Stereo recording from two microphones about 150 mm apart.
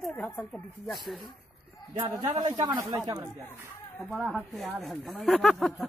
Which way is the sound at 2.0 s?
30° right (ahead or behind).